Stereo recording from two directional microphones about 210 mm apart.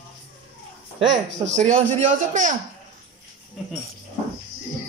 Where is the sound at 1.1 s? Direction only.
60° right (ahead or behind).